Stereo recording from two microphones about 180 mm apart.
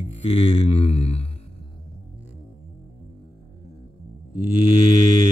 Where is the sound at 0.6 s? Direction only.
35° left (ahead or behind).